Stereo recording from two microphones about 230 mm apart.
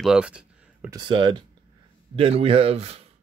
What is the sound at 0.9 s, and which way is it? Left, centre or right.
Speech, centre.